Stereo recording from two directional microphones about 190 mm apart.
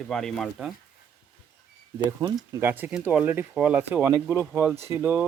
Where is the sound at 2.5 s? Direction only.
10° right (ahead or behind).